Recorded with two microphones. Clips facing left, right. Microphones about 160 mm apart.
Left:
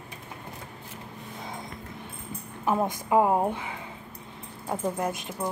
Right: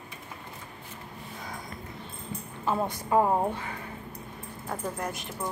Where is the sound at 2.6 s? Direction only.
15° left (ahead or behind).